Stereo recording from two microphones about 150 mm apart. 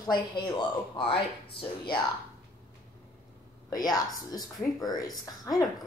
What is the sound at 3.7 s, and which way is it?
Speech, 25° left (ahead or behind).